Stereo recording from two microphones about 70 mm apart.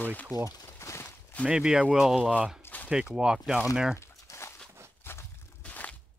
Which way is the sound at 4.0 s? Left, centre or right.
Left.